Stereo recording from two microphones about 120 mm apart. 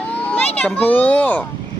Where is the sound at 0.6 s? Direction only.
10° left (ahead or behind).